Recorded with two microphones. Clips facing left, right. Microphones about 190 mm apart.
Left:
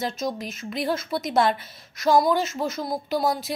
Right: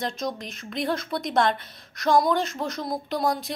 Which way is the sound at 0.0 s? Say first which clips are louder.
Left 2 dB; 5° left (ahead or behind).